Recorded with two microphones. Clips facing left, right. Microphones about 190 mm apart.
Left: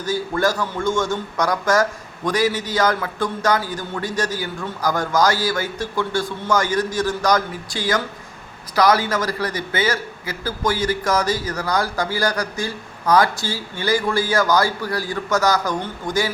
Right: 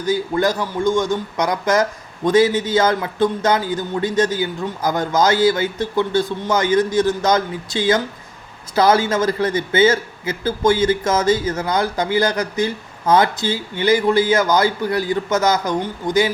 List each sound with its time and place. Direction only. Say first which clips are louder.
0.0 s speech: right 2 dB; 20° right (ahead or behind)